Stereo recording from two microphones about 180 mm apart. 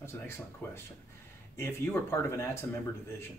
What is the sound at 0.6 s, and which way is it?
Speech, 10° left (ahead or behind).